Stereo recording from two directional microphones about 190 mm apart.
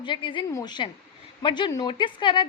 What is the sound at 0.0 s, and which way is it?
A woman's voice, 25° left (ahead or behind).